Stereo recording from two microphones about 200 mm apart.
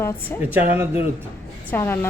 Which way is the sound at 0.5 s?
10° right (ahead or behind).